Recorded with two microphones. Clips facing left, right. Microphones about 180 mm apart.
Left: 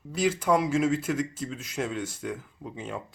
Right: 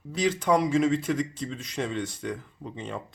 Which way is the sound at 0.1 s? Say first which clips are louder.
Even; 5° left (ahead or behind).